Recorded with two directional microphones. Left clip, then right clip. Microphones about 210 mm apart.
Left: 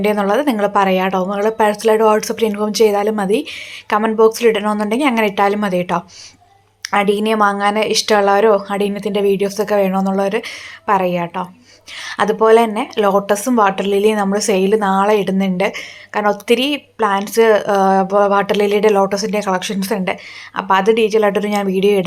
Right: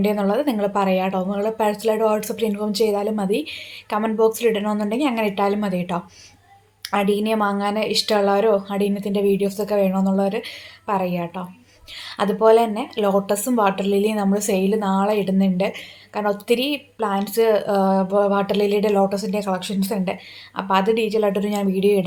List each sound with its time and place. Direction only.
0.0 s speech: 15° left (ahead or behind)